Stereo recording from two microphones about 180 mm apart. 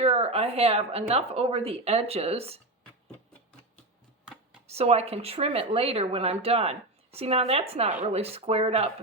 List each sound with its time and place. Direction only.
0.0 s speech: 35° right (ahead or behind)
4.7 s speech: 35° right (ahead or behind)